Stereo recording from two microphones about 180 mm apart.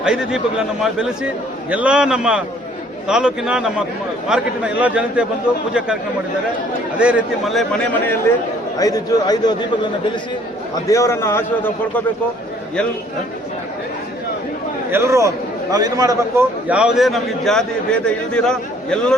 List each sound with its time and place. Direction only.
0.0 s a man's voice: 5° right (ahead or behind)
7.0 s a man's voice: 5° right (ahead or behind)
8.8 s a man's voice: 20° left (ahead or behind)
10.8 s a man's voice: 15° left (ahead or behind)
14.8 s a man's voice: 15° right (ahead or behind)
16.6 s a man's voice: 5° right (ahead or behind)